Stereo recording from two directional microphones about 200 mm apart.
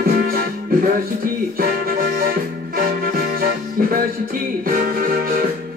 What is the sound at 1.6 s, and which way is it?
Music, 45° right (ahead or behind).